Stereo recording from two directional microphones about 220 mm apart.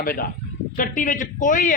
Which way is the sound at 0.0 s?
40° left (ahead or behind).